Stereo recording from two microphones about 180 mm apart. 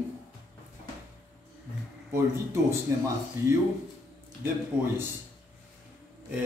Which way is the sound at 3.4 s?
15° right (ahead or behind).